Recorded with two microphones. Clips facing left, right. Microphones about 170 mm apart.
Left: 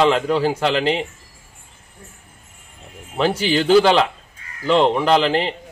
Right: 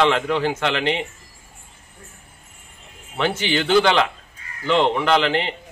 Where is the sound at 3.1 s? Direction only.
35° left (ahead or behind).